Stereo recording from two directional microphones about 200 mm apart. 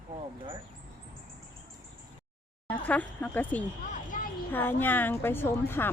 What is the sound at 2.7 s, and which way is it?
Speech, 10° left (ahead or behind).